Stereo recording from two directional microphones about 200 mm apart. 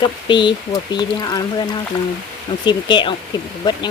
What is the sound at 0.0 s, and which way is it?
Speech, 25° left (ahead or behind).